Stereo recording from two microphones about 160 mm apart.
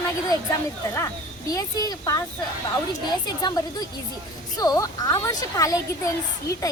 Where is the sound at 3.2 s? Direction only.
25° left (ahead or behind).